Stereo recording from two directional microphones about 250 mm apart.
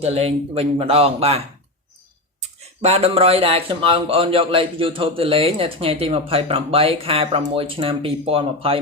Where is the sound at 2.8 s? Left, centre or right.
Right.